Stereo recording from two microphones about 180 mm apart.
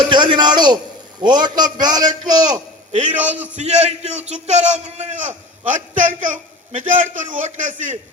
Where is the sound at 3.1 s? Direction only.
10° right (ahead or behind).